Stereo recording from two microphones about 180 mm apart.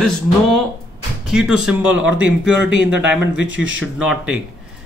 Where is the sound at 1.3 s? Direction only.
5° right (ahead or behind).